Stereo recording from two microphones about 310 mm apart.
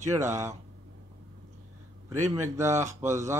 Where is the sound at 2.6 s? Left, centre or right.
Centre.